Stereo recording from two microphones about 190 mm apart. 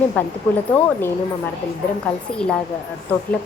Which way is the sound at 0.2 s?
10° left (ahead or behind).